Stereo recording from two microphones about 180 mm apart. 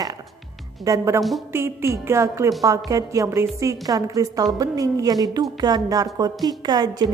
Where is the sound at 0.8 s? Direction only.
15° right (ahead or behind).